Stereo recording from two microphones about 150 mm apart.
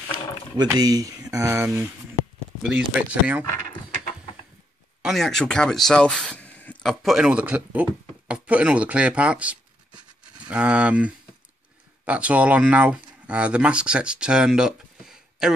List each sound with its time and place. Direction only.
0.7 s speech: 25° right (ahead or behind); by 3.4 s 10° right (ahead or behind)
5.0 s speech: centre (ahead or behind)